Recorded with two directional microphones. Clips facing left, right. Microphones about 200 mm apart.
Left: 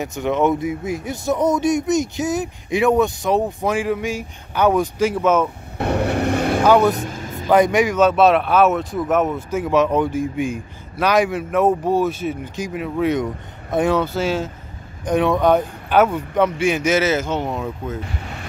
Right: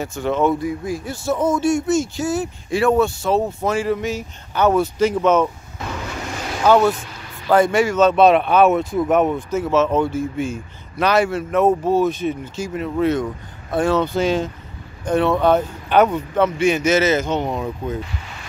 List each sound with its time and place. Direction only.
0.0 s speech: 20° left (ahead or behind)
5.8 s vehicle: 65° left (ahead or behind)
6.6 s speech: 15° left (ahead or behind)
7.0 s a sound: 45° left (ahead or behind)
7.4 s speech: 15° left (ahead or behind); by 9.6 s centre (ahead or behind)
9.6 s speech: 15° left (ahead or behind)
14.0 s speech: 5° left (ahead or behind)